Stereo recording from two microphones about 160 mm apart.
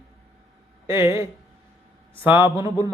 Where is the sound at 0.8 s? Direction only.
20° right (ahead or behind).